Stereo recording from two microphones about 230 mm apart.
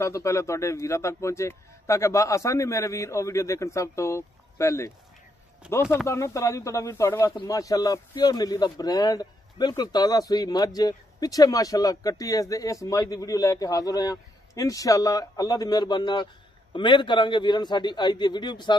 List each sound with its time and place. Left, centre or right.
0.0 s a man's voice: centre